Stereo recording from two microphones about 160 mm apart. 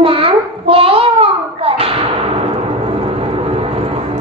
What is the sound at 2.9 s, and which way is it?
Vehicle, 35° right (ahead or behind).